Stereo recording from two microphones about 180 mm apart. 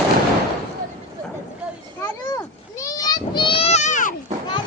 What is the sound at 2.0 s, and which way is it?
Children playing, 15° left (ahead or behind).